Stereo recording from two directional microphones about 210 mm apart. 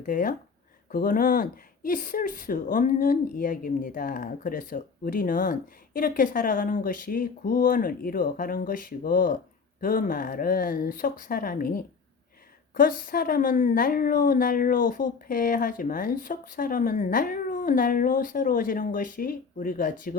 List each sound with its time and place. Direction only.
0.0 s speech: 40° left (ahead or behind)